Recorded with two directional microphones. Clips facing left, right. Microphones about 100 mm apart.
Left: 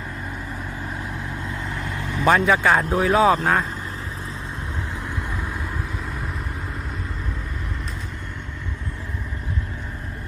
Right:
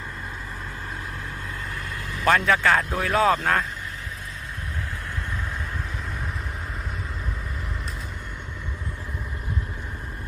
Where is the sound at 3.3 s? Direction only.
5° left (ahead or behind).